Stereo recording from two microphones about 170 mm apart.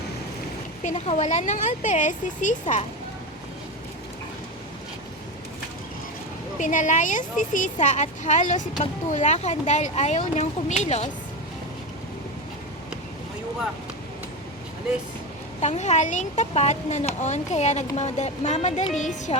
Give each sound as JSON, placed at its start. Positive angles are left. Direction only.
{"t": 0.8, "sound": "speech", "side_deg": 40}
{"t": 6.6, "sound": "speech", "side_deg": 45}
{"t": 15.6, "sound": "speech", "side_deg": 40}